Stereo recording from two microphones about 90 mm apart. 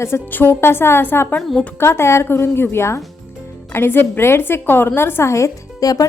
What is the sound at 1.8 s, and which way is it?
A woman's voice, 30° left (ahead or behind).